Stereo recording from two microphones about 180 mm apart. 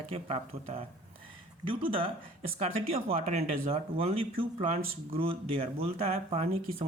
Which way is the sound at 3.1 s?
35° right (ahead or behind).